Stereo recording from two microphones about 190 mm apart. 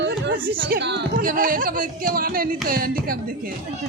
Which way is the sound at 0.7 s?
65° right (ahead or behind).